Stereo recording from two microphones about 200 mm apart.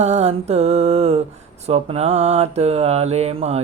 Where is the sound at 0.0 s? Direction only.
30° right (ahead or behind).